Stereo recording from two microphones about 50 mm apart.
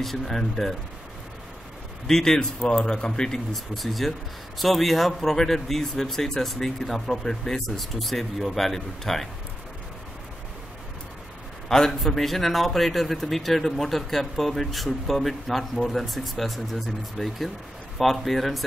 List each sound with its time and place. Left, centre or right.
0.0 s speech: centre
2.0 s a man's voice: centre
3.1 s speech: centre
11.7 s speech: centre